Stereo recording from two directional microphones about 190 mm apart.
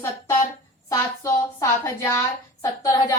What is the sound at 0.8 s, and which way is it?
A woman's voice, 15° left (ahead or behind).